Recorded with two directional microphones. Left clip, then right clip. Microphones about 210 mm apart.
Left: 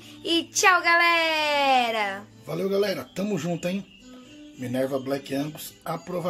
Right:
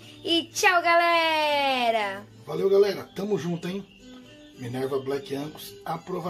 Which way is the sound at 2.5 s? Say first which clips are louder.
Right 4 dB; 55° left (ahead or behind).